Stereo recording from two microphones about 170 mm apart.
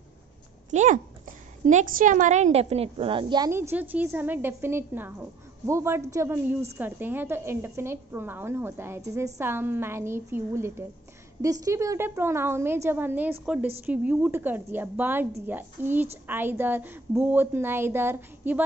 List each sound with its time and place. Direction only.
0.7 s a woman's voice: 45° right (ahead or behind); by 18.6 s 10° right (ahead or behind)